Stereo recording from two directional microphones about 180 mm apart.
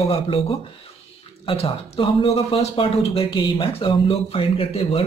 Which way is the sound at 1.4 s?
30° left (ahead or behind).